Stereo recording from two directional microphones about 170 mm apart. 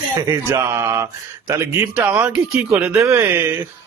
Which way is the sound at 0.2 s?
15° right (ahead or behind).